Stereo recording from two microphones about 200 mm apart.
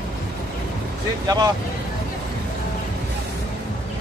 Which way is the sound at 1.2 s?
20° right (ahead or behind).